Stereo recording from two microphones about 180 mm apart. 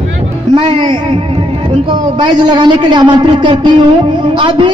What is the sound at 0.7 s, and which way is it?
A man's voice, 25° right (ahead or behind).